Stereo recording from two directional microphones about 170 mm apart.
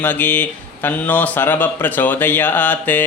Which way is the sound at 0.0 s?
10° left (ahead or behind).